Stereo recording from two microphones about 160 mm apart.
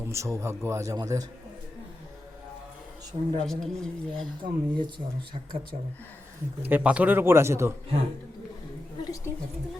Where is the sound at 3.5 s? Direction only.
5° left (ahead or behind).